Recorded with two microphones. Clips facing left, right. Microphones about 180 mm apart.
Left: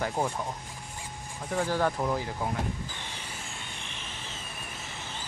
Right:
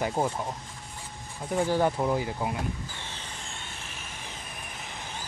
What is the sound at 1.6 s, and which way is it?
Speech, 20° right (ahead or behind).